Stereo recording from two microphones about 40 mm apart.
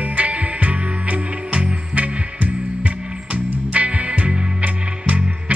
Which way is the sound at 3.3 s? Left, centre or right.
Right.